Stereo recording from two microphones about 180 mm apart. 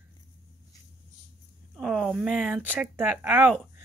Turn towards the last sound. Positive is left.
turn(degrees=-10)  # may be behind; listen again after turning